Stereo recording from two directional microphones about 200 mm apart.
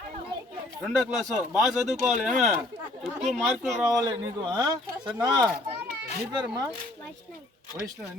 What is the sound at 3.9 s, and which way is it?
Speech, 20° right (ahead or behind).